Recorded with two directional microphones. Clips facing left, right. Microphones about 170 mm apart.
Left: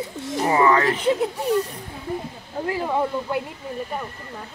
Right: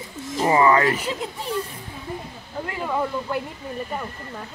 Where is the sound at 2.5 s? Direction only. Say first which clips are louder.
Left 3 dB; 30° left (ahead or behind).